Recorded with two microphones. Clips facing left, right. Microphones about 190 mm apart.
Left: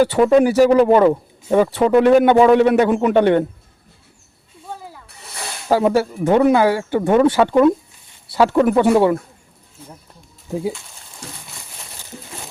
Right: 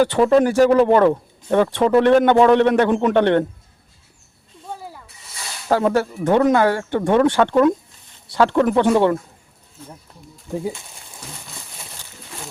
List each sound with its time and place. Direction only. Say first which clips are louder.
0.0 s speech: left 2 dB; 10° left (ahead or behind)
5.0 s a sound: left 6 dB; 60° left (ahead or behind)
5.6 s speech: left 2 dB; 10° left (ahead or behind)